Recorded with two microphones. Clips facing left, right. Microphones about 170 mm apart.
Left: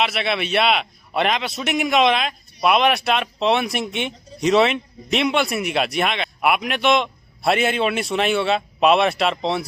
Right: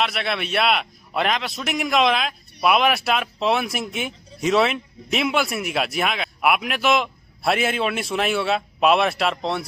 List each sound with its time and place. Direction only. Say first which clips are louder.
0.0 s a man's voice: left 2 dB; centre (ahead or behind)